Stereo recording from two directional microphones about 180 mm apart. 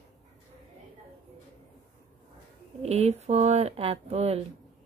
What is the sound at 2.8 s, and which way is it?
Speech, 35° right (ahead or behind).